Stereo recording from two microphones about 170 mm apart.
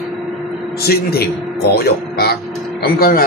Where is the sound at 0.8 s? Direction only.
65° left (ahead or behind).